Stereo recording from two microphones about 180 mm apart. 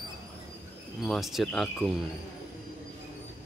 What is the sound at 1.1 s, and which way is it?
Speech, centre (ahead or behind).